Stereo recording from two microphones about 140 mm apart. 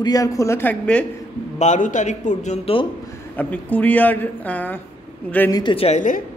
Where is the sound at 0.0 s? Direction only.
25° left (ahead or behind); by 1.0 s 10° left (ahead or behind).